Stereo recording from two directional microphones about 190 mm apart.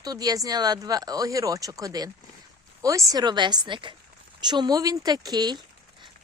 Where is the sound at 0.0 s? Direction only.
20° right (ahead or behind).